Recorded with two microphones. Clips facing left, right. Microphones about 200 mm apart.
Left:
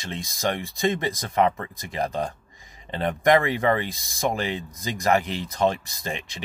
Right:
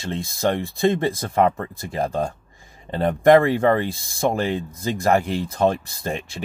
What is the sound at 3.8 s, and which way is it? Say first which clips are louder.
Speech: right 4 dB; 15° left (ahead or behind).